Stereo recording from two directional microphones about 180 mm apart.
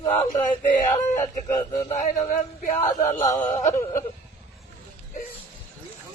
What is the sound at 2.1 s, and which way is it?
Speech, 45° left (ahead or behind).